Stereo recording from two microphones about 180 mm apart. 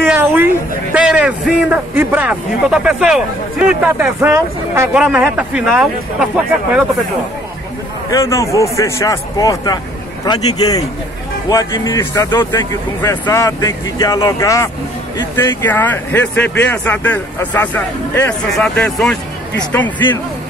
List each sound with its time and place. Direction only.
0.0 s a sound: 10° right (ahead or behind)
0.9 s a man's voice: 5° right (ahead or behind)
8.1 s a man's voice: 15° left (ahead or behind)